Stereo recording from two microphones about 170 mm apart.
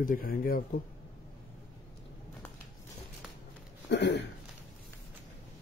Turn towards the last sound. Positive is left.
turn(degrees=90)